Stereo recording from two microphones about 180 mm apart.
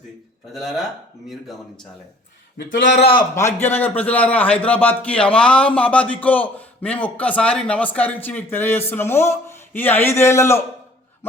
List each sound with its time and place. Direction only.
0.5 s a man's voice: centre (ahead or behind)
2.6 s a man's voice: 90° left
3.3 s a man's voice: 15° left (ahead or behind)